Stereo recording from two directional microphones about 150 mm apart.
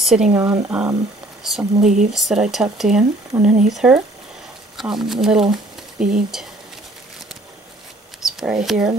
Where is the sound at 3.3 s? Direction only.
15° right (ahead or behind).